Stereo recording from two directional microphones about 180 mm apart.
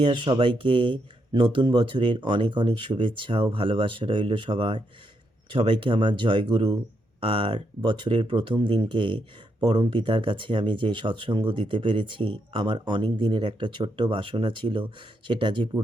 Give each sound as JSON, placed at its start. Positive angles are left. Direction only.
{"t": 0.0, "sound": "speech", "side_deg": -25}